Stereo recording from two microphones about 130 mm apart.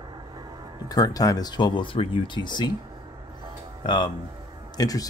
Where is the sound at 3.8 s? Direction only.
35° left (ahead or behind).